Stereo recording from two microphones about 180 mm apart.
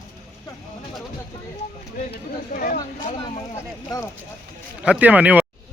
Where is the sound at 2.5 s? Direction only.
50° left (ahead or behind).